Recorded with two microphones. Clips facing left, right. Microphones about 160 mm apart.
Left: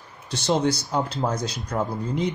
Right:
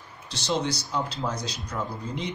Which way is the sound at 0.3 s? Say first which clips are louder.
Left 5 dB; 50° left (ahead or behind).